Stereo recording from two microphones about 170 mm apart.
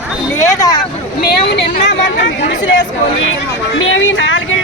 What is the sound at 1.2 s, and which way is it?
Speech, 80° left.